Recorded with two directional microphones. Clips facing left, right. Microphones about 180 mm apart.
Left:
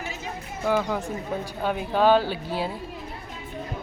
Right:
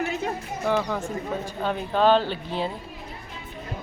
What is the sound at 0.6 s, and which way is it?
Speech, 5° left (ahead or behind).